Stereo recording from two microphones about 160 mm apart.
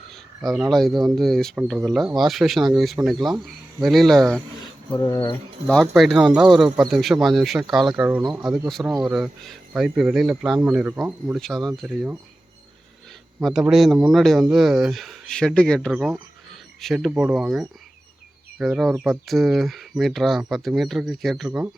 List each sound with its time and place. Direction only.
0.1 s speech: centre (ahead or behind)
4.9 s speech: 20° left (ahead or behind)
5.6 s speech: 5° left (ahead or behind)
13.4 s speech: centre (ahead or behind)